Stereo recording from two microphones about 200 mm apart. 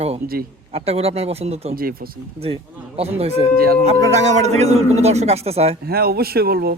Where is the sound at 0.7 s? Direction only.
30° right (ahead or behind).